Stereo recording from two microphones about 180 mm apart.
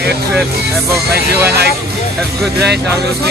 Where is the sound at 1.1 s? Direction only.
60° right (ahead or behind).